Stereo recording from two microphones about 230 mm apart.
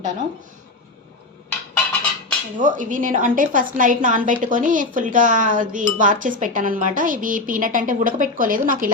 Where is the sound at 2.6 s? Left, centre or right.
Right.